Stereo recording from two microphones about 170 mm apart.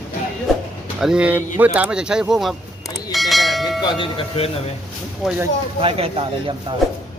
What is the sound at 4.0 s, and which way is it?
Speech, 35° left (ahead or behind).